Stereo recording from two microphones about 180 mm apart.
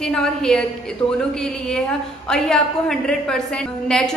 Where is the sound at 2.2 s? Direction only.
Centre (ahead or behind).